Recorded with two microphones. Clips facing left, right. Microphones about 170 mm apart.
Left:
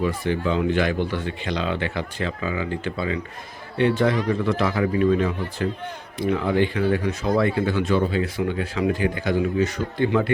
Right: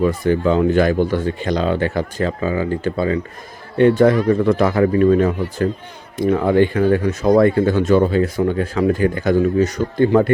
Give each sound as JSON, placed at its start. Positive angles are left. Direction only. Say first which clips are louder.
{"t": 0.0, "sound": "speech", "louder": "right 7 dB", "side_deg": -45}